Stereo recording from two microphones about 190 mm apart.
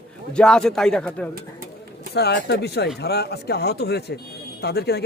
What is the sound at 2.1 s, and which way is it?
Speech, 60° left (ahead or behind).